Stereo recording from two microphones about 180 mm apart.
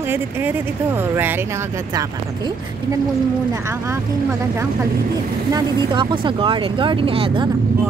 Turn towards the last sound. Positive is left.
turn(degrees=-30)  # may be behind; listen again after turning